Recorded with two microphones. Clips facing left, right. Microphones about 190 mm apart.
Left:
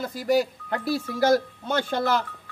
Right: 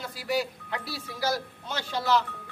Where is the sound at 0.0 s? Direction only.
45° left (ahead or behind).